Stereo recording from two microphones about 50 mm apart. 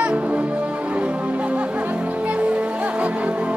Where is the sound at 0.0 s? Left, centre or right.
Right.